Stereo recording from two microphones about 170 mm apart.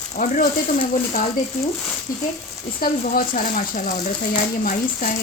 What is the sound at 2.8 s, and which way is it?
A woman's voice, 55° left (ahead or behind).